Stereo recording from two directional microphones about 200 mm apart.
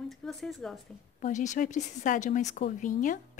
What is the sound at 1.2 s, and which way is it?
A woman's voice, 35° left (ahead or behind).